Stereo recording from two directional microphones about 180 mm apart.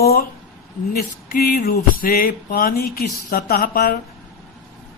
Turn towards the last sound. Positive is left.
turn(degrees=55)  # may be behind; listen again after turning